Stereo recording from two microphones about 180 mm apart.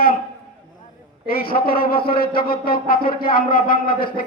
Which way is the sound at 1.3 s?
55° left (ahead or behind).